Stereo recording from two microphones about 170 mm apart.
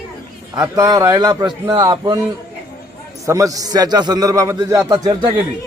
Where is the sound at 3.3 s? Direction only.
20° right (ahead or behind).